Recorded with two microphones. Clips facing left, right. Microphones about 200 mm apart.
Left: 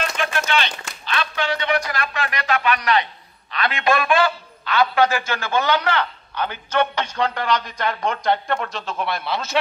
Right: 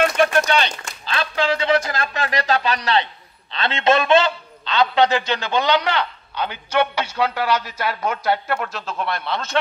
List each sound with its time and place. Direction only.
0.4 s speech: 35° right (ahead or behind)
2.1 s speech: 40° right (ahead or behind)
2.7 s a man's voice: 30° right (ahead or behind); by 9.6 s 5° left (ahead or behind)